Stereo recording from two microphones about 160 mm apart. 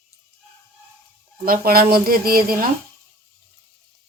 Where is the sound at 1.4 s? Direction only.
65° right (ahead or behind).